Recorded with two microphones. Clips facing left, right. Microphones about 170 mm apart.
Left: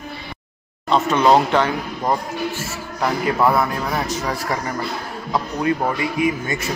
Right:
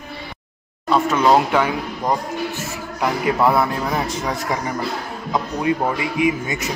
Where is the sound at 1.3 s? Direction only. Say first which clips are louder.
Even; 10° right (ahead or behind).